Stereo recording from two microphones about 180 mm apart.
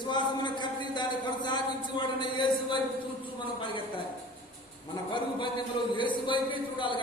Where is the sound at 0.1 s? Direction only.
25° left (ahead or behind).